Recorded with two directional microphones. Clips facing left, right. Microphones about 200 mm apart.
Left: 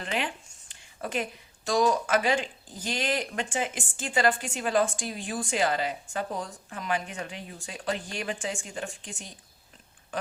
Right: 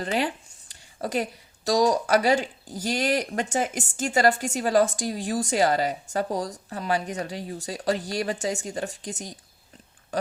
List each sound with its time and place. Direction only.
0.0 s a woman's voice: 40° right (ahead or behind)